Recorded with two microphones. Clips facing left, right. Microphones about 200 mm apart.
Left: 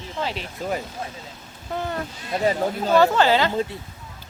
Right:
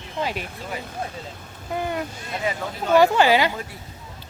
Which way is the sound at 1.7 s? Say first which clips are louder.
Right 1 dB; 10° right (ahead or behind).